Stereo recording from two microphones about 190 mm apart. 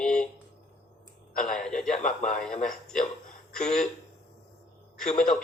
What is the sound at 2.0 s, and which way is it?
Speech, 40° left (ahead or behind).